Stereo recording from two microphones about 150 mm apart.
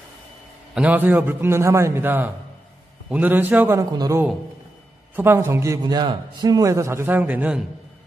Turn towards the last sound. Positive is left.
turn(degrees=-10)  # may be behind; listen again after turning